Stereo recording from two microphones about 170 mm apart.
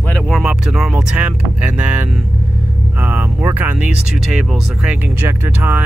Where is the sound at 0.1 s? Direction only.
Centre (ahead or behind).